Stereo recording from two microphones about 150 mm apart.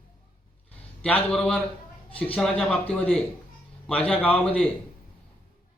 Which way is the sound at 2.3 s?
10° left (ahead or behind).